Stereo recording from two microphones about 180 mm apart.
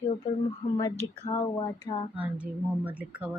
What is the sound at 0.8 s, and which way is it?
A woman's voice, 20° left (ahead or behind).